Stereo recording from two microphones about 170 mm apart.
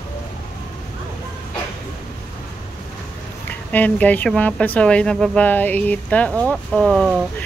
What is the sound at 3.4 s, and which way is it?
Speech, 10° left (ahead or behind).